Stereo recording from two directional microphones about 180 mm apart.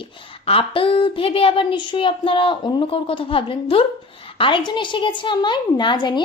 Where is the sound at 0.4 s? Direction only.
30° left (ahead or behind).